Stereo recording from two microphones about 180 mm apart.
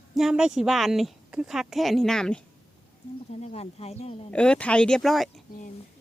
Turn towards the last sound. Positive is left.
turn(degrees=0)  # may be behind; listen again after turning